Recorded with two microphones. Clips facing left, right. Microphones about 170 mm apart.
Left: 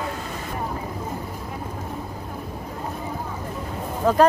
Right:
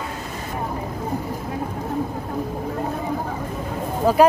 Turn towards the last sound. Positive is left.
turn(degrees=-10)  # may be behind; listen again after turning